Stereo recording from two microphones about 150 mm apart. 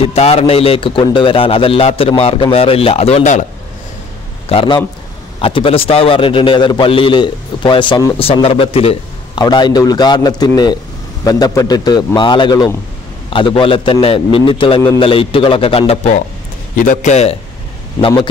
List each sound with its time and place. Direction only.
0.1 s a man's voice: 40° left (ahead or behind)
4.5 s a man's voice: 35° left (ahead or behind)
16.8 s a man's voice: 55° left (ahead or behind)